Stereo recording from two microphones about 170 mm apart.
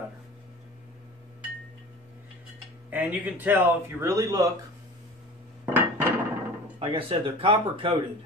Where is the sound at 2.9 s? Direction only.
10° right (ahead or behind).